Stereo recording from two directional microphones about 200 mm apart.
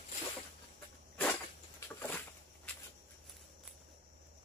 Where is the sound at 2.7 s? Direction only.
5° left (ahead or behind).